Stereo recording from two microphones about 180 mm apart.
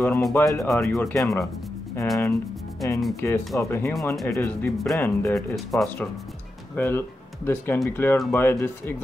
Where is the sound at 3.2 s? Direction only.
10° left (ahead or behind).